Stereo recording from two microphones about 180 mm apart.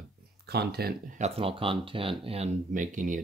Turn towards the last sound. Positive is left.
turn(degrees=-45)  # may be behind; listen again after turning